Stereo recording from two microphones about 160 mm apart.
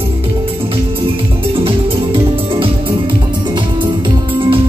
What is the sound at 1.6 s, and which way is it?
Music, 35° right (ahead or behind).